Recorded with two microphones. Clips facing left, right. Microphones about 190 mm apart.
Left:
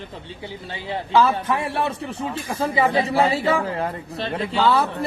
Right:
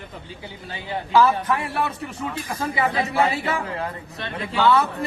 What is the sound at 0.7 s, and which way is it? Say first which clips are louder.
A man's voice: even; 25° left (ahead or behind).